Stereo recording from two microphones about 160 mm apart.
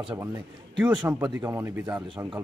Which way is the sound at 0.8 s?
5° right (ahead or behind).